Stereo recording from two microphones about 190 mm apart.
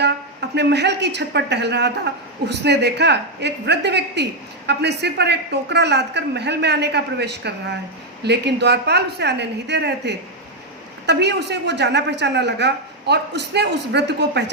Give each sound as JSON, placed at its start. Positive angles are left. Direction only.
{"t": 0.5, "sound": "a woman's voice", "side_deg": -60}